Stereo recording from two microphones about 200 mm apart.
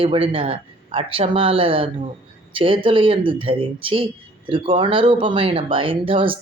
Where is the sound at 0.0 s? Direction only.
25° right (ahead or behind).